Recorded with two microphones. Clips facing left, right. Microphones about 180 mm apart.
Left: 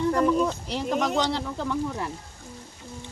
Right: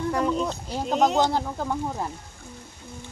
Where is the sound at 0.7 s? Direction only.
70° left (ahead or behind).